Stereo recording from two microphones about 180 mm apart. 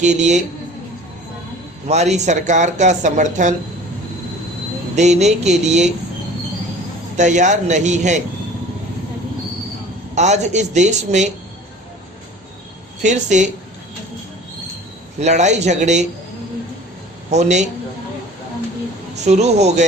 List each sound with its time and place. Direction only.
0.0 s speech: 40° right (ahead or behind)
1.9 s speech: 40° right (ahead or behind)
4.9 s speech: 40° right (ahead or behind)
7.2 s speech: 40° right (ahead or behind)
10.2 s speech: 40° right (ahead or behind)
13.0 s speech: 40° right (ahead or behind)
15.2 s speech: 40° right (ahead or behind)
17.3 s speech: 40° right (ahead or behind)
19.2 s speech: 40° right (ahead or behind)